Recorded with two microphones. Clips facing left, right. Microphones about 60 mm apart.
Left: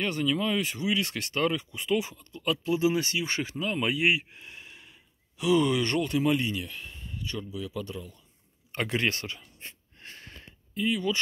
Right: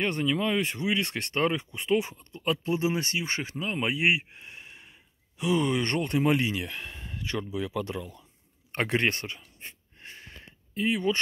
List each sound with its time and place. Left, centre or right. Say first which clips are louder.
0.0 s speech: right 1 dB; right
6.4 s speech: right 2 dB; right
7.8 s speech: right 4 dB; right
8.7 s speech: right 2 dB; right
9.6 s wheeze: right 1 dB; centre
10.7 s speech: right 1 dB; right